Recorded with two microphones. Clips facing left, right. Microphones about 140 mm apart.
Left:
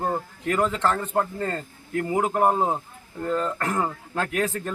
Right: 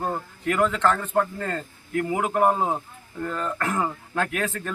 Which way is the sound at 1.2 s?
20° left (ahead or behind).